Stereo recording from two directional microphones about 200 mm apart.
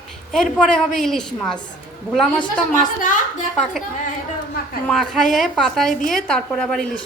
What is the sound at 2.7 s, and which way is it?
Speech, 40° left (ahead or behind).